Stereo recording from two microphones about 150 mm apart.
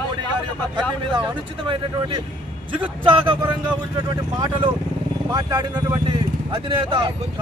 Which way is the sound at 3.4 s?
10° right (ahead or behind).